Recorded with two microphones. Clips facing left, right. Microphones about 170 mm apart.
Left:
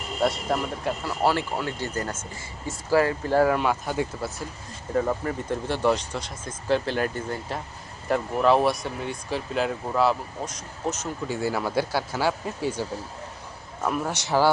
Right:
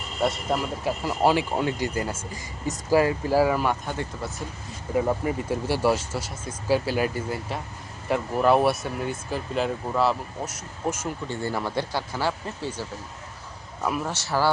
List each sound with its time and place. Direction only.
0.2 s speech: centre (ahead or behind)
1.0 s speech: 15° right (ahead or behind)
3.3 s speech: centre (ahead or behind)
4.9 s speech: 10° right (ahead or behind)
11.3 s speech: 10° left (ahead or behind)
13.8 s speech: 5° right (ahead or behind)
14.1 s speech: 15° left (ahead or behind)